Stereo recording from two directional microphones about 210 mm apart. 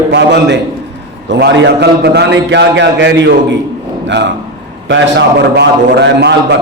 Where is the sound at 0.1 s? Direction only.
55° right (ahead or behind).